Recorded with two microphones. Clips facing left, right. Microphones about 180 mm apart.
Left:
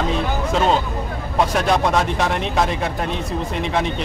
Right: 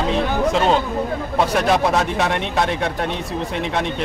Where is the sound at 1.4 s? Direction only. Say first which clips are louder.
Even; centre (ahead or behind).